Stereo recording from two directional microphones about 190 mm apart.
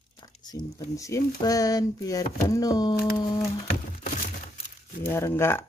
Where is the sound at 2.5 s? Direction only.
20° left (ahead or behind).